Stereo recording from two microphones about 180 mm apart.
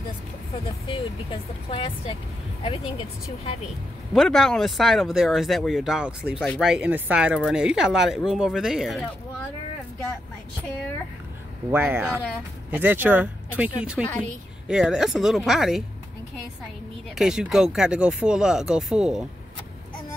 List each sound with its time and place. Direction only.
0.9 s speech: 35° left (ahead or behind)
4.1 s speech: centre (ahead or behind)
11.7 s speech: 10° right (ahead or behind)
17.2 s speech: 5° right (ahead or behind)